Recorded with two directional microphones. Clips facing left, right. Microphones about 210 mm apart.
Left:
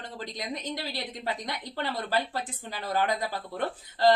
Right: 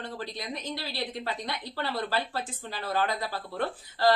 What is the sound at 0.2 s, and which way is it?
Speech, 20° left (ahead or behind).